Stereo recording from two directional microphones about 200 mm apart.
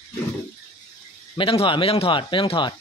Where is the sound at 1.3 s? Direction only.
25° left (ahead or behind).